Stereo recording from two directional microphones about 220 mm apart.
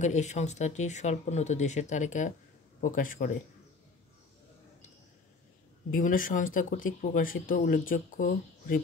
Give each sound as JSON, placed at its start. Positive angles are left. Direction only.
{"t": 0.0, "sound": "speech", "side_deg": 30}
{"t": 5.9, "sound": "speech", "side_deg": 35}